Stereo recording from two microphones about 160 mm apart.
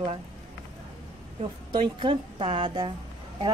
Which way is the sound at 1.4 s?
30° right (ahead or behind).